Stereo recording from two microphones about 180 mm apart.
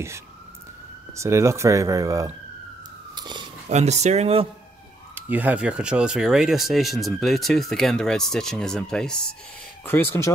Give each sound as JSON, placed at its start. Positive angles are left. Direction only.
{"t": 1.1, "sound": "speech", "side_deg": -15}
{"t": 3.2, "sound": "police car", "side_deg": -25}
{"t": 3.6, "sound": "speech", "side_deg": -40}
{"t": 5.1, "sound": "speech", "side_deg": -10}